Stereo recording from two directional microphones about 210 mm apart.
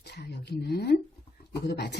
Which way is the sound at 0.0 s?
50° left (ahead or behind).